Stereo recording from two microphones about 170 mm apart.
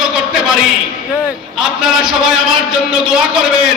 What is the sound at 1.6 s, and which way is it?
A man's voice, 5° right (ahead or behind).